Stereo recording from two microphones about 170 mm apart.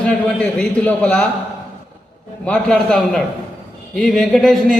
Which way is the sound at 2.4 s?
5° left (ahead or behind).